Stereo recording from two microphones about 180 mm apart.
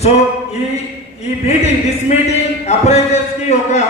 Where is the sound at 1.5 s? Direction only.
35° left (ahead or behind).